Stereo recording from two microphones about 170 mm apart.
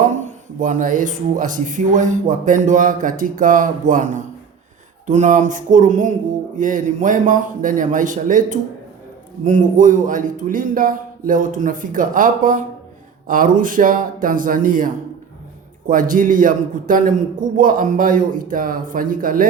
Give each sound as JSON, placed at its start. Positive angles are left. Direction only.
{"t": 0.2, "sound": "speech", "side_deg": -45}